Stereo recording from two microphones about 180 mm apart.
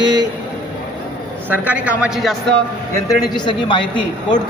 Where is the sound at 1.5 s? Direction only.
10° right (ahead or behind).